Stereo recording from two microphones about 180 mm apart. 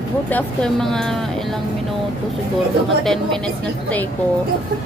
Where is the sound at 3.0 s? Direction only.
5° left (ahead or behind).